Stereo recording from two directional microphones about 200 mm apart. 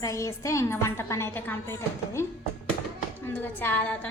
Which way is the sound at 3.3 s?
10° left (ahead or behind).